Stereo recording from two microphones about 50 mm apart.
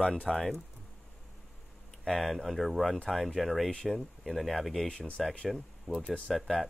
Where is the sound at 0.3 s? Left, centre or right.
Centre.